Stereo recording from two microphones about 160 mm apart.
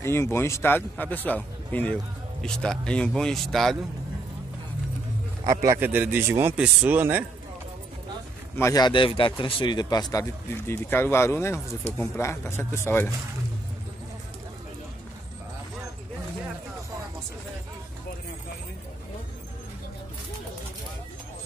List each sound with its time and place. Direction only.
0.0 s a man's voice: 15° left (ahead or behind)
5.5 s a man's voice: 20° right (ahead or behind)
8.5 s a man's voice: 20° left (ahead or behind)